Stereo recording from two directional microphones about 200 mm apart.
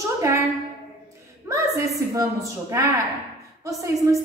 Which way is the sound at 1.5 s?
15° right (ahead or behind).